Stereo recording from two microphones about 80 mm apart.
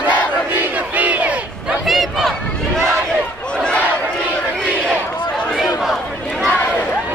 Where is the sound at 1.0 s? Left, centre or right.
Centre.